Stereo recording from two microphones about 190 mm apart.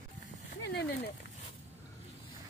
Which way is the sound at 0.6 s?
60° left (ahead or behind).